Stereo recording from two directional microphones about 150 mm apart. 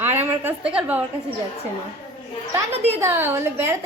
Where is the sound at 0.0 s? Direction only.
15° right (ahead or behind).